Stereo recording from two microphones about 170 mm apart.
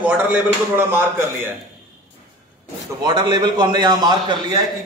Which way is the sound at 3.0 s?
25° right (ahead or behind).